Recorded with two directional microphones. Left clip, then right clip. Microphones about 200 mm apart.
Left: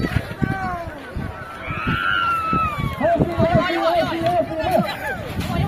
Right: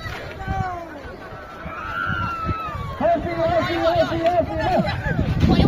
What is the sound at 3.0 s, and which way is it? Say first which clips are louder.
Run: left 1 dB; 35° left (ahead or behind).